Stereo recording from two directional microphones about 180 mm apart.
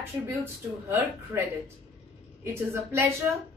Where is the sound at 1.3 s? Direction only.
15° right (ahead or behind).